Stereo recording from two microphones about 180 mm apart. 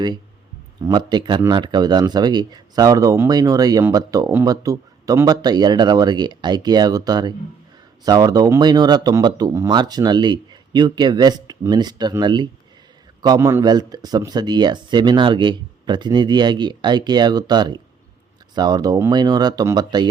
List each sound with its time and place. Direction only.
0.9 s speech: 25° right (ahead or behind)